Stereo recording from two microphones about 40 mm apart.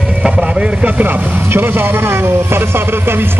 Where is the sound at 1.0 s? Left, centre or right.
Right.